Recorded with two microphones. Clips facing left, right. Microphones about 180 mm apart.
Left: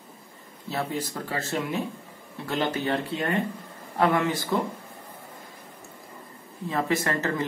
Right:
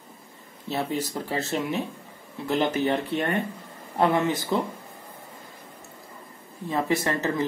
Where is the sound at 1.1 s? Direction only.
20° right (ahead or behind).